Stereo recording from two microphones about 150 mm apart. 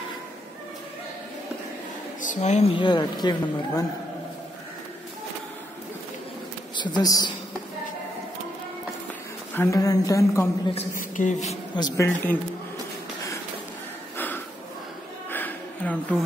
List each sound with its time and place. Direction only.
2.2 s speech: 50° left (ahead or behind); by 3.8 s 30° left (ahead or behind)
6.8 s a woman's voice: 25° left (ahead or behind)
9.6 s a woman's voice: 20° left (ahead or behind)
11.0 s speech: 60° left (ahead or behind)
11.7 s a woman's voice: 25° left (ahead or behind)
14.1 s a sound: 15° left (ahead or behind)